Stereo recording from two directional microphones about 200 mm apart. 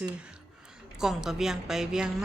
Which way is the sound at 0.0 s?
5° right (ahead or behind).